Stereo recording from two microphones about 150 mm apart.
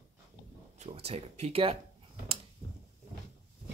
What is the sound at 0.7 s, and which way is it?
Speech, 45° right (ahead or behind).